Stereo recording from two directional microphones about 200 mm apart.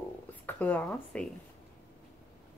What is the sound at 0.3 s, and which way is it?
Speech, 10° left (ahead or behind).